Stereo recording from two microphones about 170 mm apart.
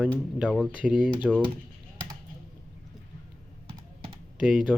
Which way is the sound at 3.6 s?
30° right (ahead or behind).